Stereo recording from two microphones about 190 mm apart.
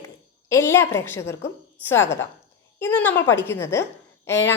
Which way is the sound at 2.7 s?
10° left (ahead or behind).